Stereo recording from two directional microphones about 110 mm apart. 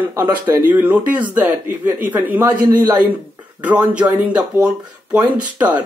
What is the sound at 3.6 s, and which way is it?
Speech, 10° right (ahead or behind).